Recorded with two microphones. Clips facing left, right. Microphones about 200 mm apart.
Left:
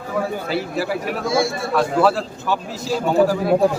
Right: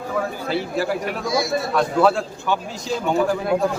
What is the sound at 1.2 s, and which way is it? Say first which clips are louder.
Speech: left 5 dB; 25° left (ahead or behind).